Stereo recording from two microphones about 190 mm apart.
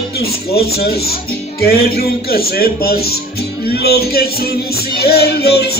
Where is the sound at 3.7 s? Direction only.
55° left (ahead or behind).